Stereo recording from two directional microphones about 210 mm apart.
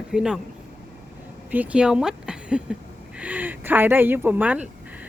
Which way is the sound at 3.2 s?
5° right (ahead or behind).